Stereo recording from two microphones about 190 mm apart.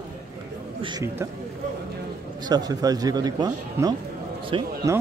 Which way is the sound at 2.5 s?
20° right (ahead or behind).